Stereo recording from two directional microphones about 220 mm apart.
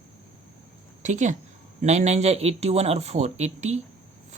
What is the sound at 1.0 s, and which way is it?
A woman's voice, 35° right (ahead or behind).